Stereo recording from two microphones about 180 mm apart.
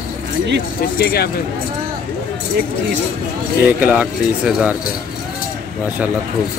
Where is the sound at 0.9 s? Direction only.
60° left (ahead or behind).